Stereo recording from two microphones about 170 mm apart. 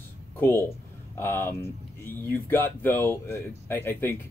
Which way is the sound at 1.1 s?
15° left (ahead or behind).